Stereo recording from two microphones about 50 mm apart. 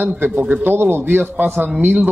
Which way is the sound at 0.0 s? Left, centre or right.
Right.